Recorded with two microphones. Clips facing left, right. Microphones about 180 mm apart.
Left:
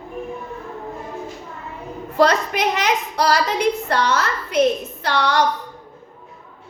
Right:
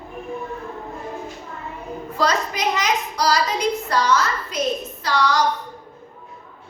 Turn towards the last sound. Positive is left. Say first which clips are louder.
# left 1 dB
turn(degrees=60)  # may be behind; listen again after turning